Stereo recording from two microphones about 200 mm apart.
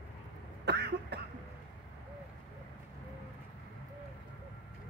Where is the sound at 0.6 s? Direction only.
55° right (ahead or behind).